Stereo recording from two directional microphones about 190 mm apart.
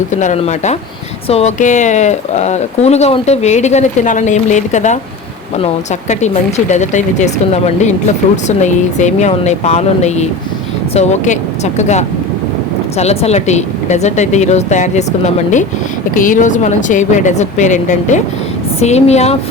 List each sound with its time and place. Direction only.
0.1 s speech: 40° left (ahead or behind)
6.1 s speech: 40° left (ahead or behind)